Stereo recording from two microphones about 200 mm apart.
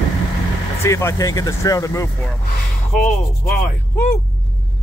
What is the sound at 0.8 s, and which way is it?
Speech, 15° left (ahead or behind).